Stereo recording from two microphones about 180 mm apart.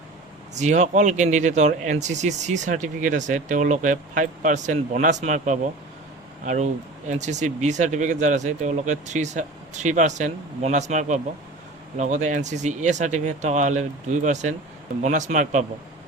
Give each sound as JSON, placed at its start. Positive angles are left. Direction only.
{"t": 0.5, "sound": "speech", "side_deg": -40}